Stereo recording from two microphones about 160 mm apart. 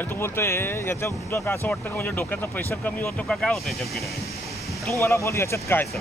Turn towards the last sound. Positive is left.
turn(degrees=15)  # may be behind; listen again after turning